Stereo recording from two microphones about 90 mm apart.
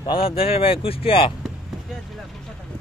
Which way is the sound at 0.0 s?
80° left.